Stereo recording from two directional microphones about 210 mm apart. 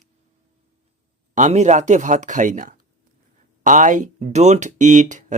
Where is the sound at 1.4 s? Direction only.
35° right (ahead or behind).